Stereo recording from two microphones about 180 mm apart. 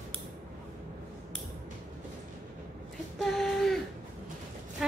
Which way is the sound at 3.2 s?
Centre (ahead or behind).